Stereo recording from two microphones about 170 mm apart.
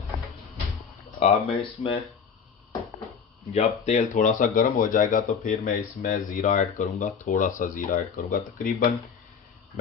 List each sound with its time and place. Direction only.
1.2 s speech: 35° left (ahead or behind)
3.5 s speech: 40° left (ahead or behind)